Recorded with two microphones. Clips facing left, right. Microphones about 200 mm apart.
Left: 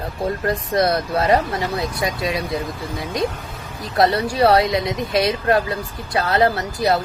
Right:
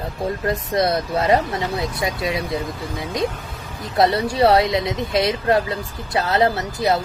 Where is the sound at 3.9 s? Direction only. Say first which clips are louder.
Even; 25° right (ahead or behind).